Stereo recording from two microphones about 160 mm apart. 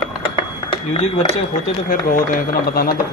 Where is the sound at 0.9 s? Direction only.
40° left (ahead or behind).